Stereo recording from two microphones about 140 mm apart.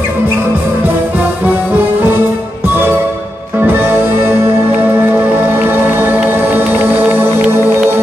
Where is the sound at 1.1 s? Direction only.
15° right (ahead or behind).